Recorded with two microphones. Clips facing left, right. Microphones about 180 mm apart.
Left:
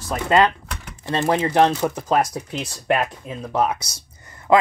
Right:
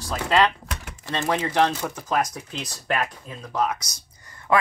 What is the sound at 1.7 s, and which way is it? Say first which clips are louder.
Speech: left 6 dB; 30° left (ahead or behind).